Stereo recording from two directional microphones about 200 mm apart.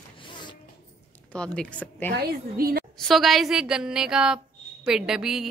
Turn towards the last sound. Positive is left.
turn(degrees=-5)  # may be behind; listen again after turning